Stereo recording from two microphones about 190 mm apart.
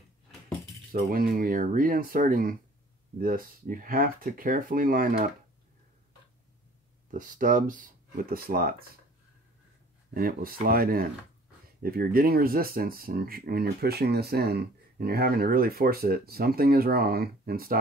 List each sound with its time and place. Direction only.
0.9 s speech: 50° right (ahead or behind)
7.1 s speech: 45° right (ahead or behind)
10.1 s speech: 50° right (ahead or behind)